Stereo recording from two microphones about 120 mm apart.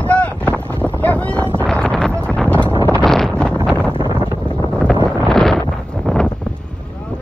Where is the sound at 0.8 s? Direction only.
10° left (ahead or behind).